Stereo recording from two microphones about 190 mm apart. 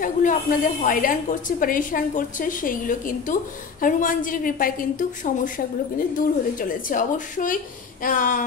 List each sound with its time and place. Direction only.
0.0 s a woman's voice: 45° left (ahead or behind)